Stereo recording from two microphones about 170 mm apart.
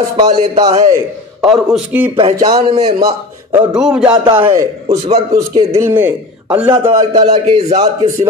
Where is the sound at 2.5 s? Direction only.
35° right (ahead or behind).